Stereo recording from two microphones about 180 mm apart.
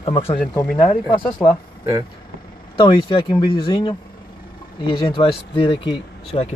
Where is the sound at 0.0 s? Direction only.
35° left (ahead or behind).